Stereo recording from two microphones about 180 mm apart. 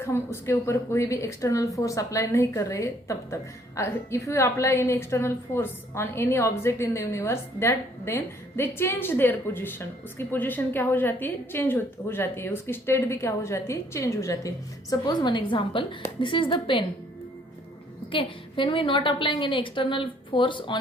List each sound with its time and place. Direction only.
0.0 s a woman's voice: 15° left (ahead or behind)
18.1 s a woman's voice: 30° left (ahead or behind)